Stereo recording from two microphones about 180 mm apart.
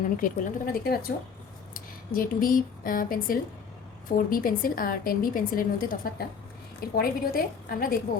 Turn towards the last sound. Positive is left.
turn(degrees=55)  # may be behind; listen again after turning